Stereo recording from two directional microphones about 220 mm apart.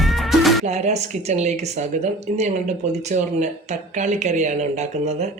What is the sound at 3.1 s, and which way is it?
A woman's voice, 30° right (ahead or behind).